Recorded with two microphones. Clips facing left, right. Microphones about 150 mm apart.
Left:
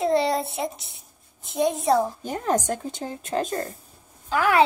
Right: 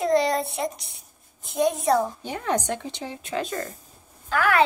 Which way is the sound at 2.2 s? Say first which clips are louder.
Left 2 dB; 45° left (ahead or behind).